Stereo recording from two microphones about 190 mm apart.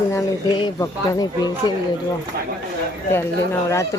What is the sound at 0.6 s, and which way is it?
Speech, 20° left (ahead or behind).